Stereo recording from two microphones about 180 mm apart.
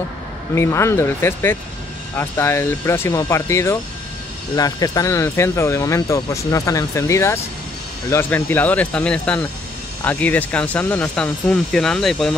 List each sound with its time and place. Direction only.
0.6 s speech: 15° left (ahead or behind)